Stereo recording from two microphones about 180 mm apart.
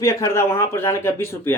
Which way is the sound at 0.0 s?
15° left (ahead or behind).